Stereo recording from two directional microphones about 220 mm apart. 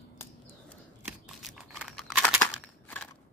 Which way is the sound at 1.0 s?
Centre (ahead or behind).